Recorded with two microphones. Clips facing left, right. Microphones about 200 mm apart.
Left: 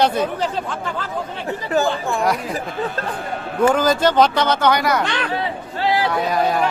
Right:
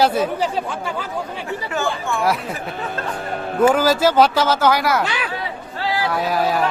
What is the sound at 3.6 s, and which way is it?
Speech, 5° right (ahead or behind).